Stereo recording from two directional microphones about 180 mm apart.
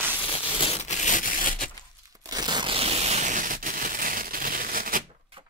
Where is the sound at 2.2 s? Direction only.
20° right (ahead or behind); by 5.0 s 50° right (ahead or behind).